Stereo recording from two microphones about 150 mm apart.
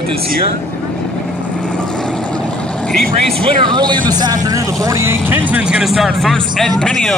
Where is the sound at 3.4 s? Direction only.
30° right (ahead or behind).